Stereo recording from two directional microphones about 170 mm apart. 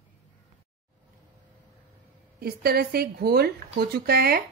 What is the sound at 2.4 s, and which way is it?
Speech, 65° right (ahead or behind).